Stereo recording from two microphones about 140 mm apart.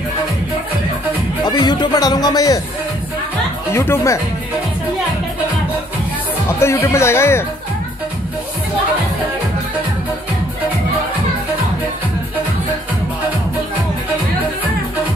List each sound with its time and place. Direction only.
1.4 s speech: 30° left (ahead or behind)
3.7 s speech: 20° left (ahead or behind)
6.6 s speech: 20° left (ahead or behind)